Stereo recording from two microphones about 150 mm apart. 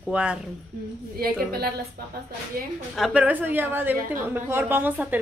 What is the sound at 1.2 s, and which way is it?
Speech, 90° right.